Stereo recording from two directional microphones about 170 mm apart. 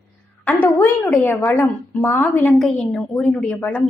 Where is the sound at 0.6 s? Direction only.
10° left (ahead or behind).